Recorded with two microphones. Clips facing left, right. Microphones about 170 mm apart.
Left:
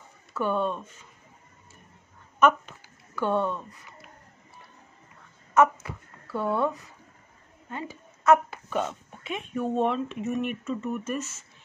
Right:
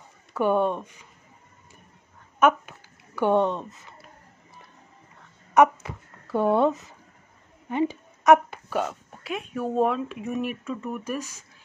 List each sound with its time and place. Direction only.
0.3 s speech: 15° right (ahead or behind)
3.2 s speech: 20° right (ahead or behind)
5.5 s speech: 15° right (ahead or behind)
7.7 s a sound: 20° right (ahead or behind)
8.6 s speech: 5° right (ahead or behind)